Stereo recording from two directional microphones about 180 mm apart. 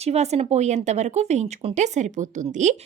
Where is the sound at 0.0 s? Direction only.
35° right (ahead or behind).